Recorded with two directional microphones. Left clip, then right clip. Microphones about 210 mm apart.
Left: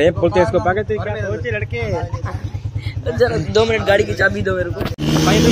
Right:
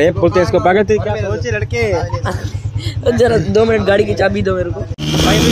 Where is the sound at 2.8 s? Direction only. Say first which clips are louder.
Right 5 dB; 35° right (ahead or behind).